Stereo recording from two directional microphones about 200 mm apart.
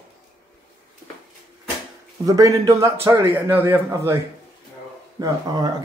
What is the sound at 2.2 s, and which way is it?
A man's voice, 15° right (ahead or behind).